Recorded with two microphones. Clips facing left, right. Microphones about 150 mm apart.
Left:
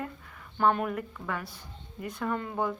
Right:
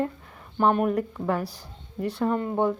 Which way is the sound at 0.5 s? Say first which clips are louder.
Right 4 dB; 20° right (ahead or behind).